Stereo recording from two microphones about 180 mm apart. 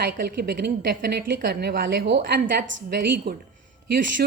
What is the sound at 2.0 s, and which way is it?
A woman's voice, 75° right (ahead or behind).